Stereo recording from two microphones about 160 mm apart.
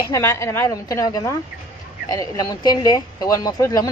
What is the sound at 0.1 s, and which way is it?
A woman's voice, 15° left (ahead or behind).